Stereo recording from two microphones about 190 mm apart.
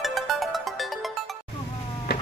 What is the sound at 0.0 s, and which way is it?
Music, centre (ahead or behind).